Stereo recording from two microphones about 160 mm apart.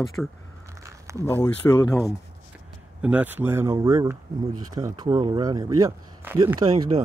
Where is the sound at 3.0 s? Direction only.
10° right (ahead or behind).